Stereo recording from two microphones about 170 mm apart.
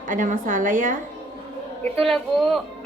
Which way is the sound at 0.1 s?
50° right (ahead or behind).